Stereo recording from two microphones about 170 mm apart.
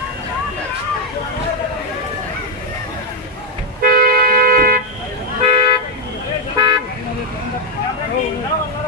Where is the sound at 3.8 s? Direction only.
60° right (ahead or behind).